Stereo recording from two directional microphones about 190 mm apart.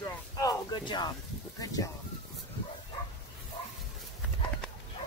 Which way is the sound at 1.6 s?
20° left (ahead or behind).